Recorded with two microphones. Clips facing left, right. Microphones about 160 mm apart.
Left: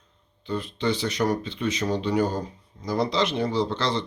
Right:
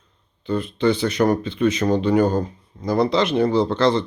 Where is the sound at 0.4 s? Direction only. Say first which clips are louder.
Right 7 dB; 55° right (ahead or behind).